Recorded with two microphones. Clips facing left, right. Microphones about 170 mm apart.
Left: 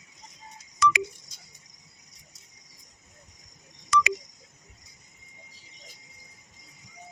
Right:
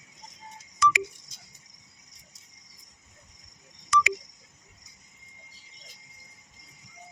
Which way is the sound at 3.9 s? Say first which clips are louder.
Left 1 dB; 60° left (ahead or behind).